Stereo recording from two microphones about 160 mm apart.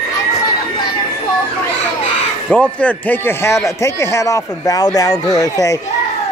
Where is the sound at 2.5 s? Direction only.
5° left (ahead or behind).